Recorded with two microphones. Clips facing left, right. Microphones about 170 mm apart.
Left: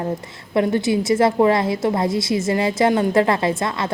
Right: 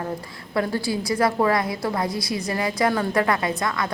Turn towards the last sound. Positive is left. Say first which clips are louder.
# left 4 dB
turn(degrees=25)  # may be behind; listen again after turning